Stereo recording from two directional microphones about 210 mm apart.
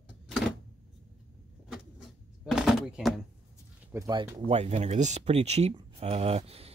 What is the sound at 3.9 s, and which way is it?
Speech, 15° right (ahead or behind).